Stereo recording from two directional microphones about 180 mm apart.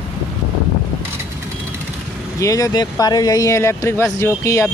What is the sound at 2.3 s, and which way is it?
Speech, 20° left (ahead or behind).